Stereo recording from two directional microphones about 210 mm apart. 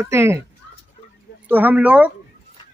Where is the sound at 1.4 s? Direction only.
10° right (ahead or behind).